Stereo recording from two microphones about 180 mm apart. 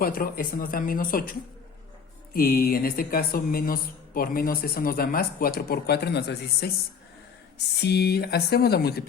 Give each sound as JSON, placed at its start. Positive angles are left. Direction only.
{"t": 0.0, "sound": "speech", "side_deg": 55}
{"t": 7.8, "sound": "speech", "side_deg": 65}